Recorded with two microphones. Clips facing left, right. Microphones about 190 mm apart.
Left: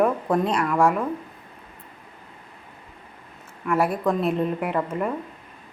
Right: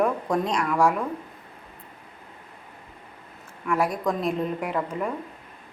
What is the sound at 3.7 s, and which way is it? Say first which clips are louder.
A woman's voice: left 3 dB; 5° left (ahead or behind).